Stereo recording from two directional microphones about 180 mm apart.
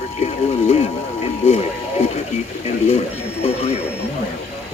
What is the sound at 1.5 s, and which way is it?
Speech, 40° left (ahead or behind).